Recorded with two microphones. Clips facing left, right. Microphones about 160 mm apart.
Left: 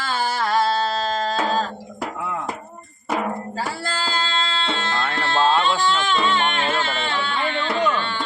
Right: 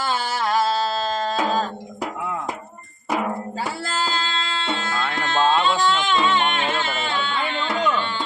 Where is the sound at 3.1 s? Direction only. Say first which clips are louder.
Even; 20° right (ahead or behind).